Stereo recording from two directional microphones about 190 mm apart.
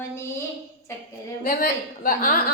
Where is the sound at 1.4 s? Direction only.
45° left (ahead or behind).